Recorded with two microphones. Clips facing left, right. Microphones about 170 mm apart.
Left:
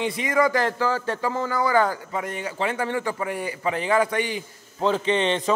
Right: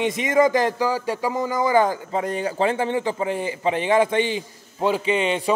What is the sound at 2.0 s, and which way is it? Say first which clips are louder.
A man's voice: right 5 dB; 30° right (ahead or behind).